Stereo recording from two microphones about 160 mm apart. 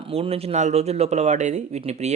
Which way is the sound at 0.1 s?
40° right (ahead or behind).